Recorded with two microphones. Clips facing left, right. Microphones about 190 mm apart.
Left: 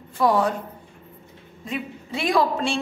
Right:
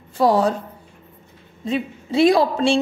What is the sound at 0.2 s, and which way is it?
Speech, 30° right (ahead or behind).